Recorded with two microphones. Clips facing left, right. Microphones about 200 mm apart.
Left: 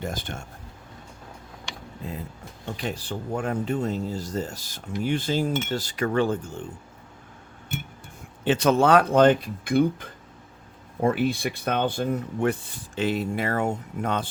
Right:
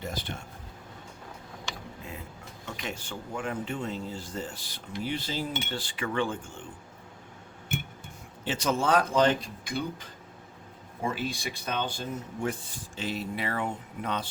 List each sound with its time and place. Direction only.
0.0 s speech: 50° left (ahead or behind)
2.6 s speech: 35° left (ahead or behind)
8.4 s speech: 60° left (ahead or behind)